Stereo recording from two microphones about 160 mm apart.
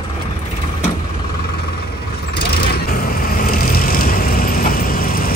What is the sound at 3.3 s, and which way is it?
Vehicle, 65° left (ahead or behind).